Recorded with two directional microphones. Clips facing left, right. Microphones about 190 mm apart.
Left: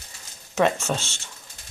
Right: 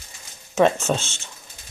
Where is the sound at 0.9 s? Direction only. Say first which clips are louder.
Right 4 dB; 15° right (ahead or behind).